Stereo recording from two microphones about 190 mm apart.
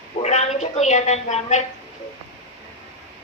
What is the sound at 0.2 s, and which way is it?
Speech, 35° left (ahead or behind).